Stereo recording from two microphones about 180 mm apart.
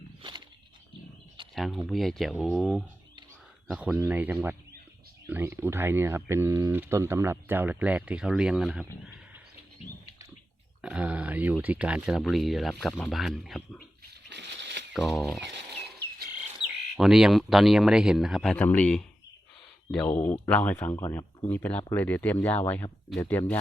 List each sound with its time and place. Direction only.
0.2 s a sound: 25° right (ahead or behind)
1.5 s speech: centre (ahead or behind)
10.8 s speech: 5° right (ahead or behind)
14.3 s a sound: 70° right (ahead or behind)
14.9 s speech: centre (ahead or behind)
16.6 s speech: 5° right (ahead or behind); by 23.6 s 15° left (ahead or behind)